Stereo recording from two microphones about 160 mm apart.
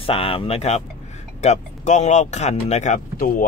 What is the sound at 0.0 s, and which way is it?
Speech, 35° left (ahead or behind).